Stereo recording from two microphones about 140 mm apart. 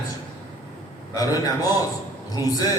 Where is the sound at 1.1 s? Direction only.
25° left (ahead or behind).